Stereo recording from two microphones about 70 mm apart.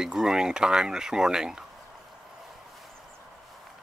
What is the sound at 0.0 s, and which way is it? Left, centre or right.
Speech, centre.